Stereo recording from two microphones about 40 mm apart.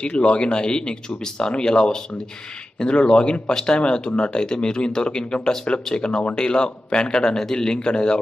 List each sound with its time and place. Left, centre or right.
0.0 s speech: left